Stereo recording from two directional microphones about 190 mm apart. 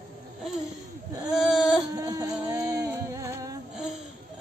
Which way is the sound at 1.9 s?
20° right (ahead or behind).